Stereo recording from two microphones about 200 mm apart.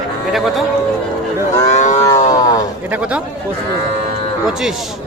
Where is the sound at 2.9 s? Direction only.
5° right (ahead or behind).